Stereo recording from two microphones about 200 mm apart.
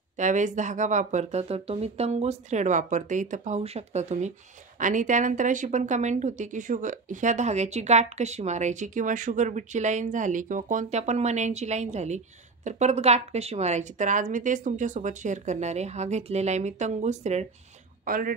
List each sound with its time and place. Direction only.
0.2 s a woman's voice: 40° right (ahead or behind)